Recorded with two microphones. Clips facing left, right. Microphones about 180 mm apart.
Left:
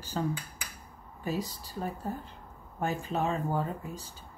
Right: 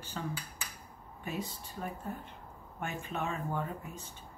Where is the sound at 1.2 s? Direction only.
35° left (ahead or behind).